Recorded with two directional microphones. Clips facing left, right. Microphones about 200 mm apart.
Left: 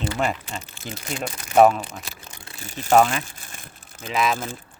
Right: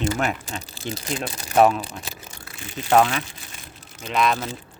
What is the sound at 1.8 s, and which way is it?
Speech, 35° right (ahead or behind).